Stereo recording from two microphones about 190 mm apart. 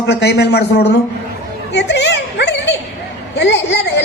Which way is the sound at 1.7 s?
65° left (ahead or behind).